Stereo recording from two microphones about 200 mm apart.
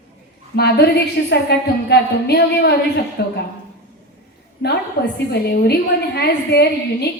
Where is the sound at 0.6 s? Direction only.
55° left (ahead or behind).